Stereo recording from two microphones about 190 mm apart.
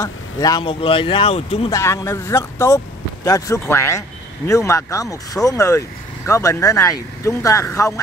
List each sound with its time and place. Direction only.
0.0 s speech: 20° left (ahead or behind)
1.7 s speech: 15° left (ahead or behind)